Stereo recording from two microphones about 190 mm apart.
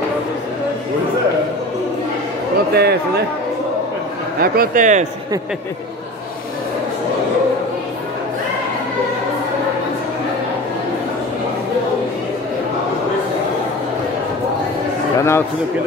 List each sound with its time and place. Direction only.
2.7 s speech: 55° right (ahead or behind)
4.4 s a man's voice: 45° right (ahead or behind)
15.1 s a man's voice: 15° left (ahead or behind)